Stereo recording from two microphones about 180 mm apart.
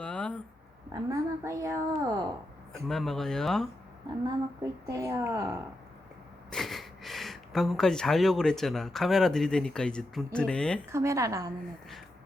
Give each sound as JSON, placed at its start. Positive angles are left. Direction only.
{"t": 0.0, "sound": "a sound", "side_deg": 5}
{"t": 1.1, "sound": "a child's voice", "side_deg": -15}
{"t": 2.7, "sound": "speech", "side_deg": 0}
{"t": 4.6, "sound": "a child's voice", "side_deg": -15}
{"t": 6.5, "sound": "speech", "side_deg": 0}
{"t": 10.8, "sound": "a child's voice", "side_deg": -15}